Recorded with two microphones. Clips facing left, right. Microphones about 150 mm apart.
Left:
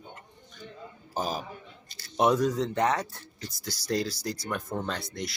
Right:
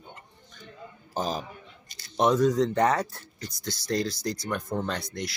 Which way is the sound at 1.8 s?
20° right (ahead or behind).